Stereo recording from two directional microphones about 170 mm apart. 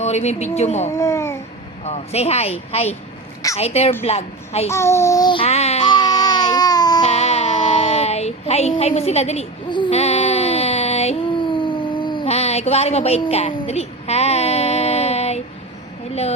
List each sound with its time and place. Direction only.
0.0 s a woman's voice: 40° left (ahead or behind)
0.9 s babbling: 15° left (ahead or behind)
1.8 s a woman's voice: 40° left (ahead or behind)
4.7 s babbling: 15° left (ahead or behind); by 5.8 s 40° left (ahead or behind)
5.8 s baby cry: 25° left (ahead or behind)
7.0 s child singing: 40° left (ahead or behind)